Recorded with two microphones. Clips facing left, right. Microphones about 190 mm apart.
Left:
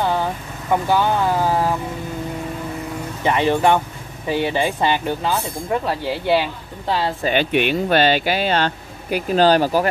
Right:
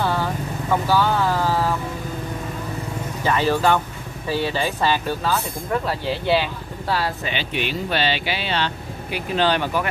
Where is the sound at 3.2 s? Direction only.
20° left (ahead or behind).